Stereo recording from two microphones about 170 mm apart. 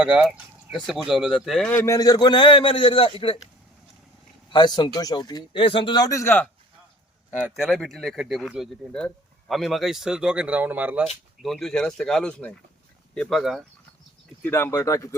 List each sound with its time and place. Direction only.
0.0 s speech: 5° right (ahead or behind)
1.7 s a man's voice: 15° left (ahead or behind); by 3.3 s 30° left (ahead or behind)
4.5 s a man's voice: 25° left (ahead or behind)
7.5 s speech: centre (ahead or behind)
11.4 s speech: centre (ahead or behind)
14.4 s speech: 15° left (ahead or behind)